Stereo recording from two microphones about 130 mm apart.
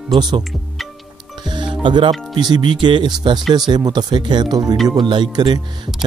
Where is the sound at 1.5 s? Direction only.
35° right (ahead or behind).